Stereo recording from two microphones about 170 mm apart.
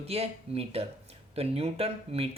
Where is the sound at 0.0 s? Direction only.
35° right (ahead or behind).